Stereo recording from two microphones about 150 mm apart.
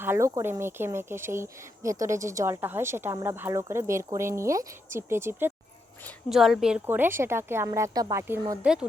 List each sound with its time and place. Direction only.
0.0 s speech: 15° right (ahead or behind)
6.2 s speech: centre (ahead or behind); by 8.2 s 25° right (ahead or behind)
8.7 s speech: 5° right (ahead or behind)